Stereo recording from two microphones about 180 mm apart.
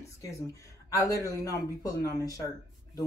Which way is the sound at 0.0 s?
15° left (ahead or behind).